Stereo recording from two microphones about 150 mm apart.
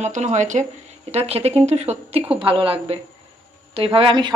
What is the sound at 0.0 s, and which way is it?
Speech, 50° right (ahead or behind).